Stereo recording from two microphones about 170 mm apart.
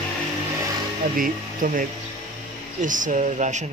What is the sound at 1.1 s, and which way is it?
Speech, 55° right (ahead or behind).